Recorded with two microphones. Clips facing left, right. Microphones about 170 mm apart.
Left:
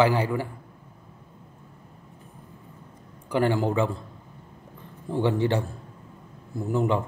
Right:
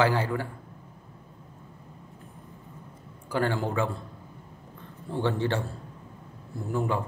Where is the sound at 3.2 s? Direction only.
15° left (ahead or behind).